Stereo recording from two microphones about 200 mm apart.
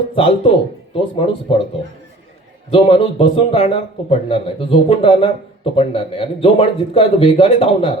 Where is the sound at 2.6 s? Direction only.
30° left (ahead or behind).